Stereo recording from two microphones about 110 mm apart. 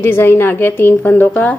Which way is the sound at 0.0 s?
20° left (ahead or behind).